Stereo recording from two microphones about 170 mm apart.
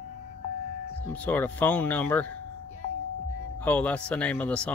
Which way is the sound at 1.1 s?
10° left (ahead or behind).